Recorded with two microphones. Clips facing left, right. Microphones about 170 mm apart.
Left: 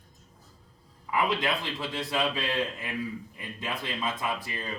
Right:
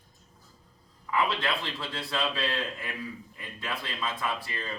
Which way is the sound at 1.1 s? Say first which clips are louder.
Left 1 dB; 15° left (ahead or behind).